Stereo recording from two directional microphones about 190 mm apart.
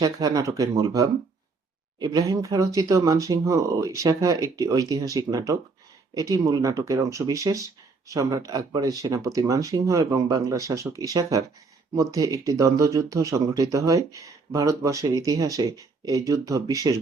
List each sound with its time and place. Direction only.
0.0 s speech: 20° right (ahead or behind)